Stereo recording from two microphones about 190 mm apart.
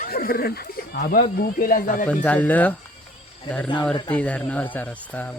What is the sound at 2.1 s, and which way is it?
Speech, 10° left (ahead or behind).